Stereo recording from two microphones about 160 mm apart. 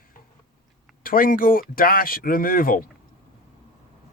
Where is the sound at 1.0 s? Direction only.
60° left (ahead or behind).